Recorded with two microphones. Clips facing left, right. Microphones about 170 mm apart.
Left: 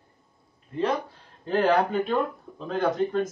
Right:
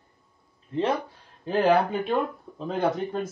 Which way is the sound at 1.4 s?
15° right (ahead or behind).